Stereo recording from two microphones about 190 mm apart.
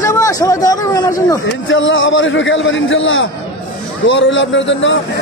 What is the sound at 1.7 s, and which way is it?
A man's voice, 85° left.